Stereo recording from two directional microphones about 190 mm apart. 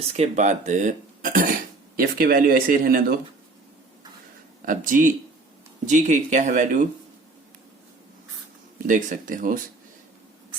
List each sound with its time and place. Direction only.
0.0 s speech: 35° right (ahead or behind); by 3.2 s 50° right (ahead or behind)
4.6 s speech: 45° right (ahead or behind)
8.9 s speech: 45° right (ahead or behind)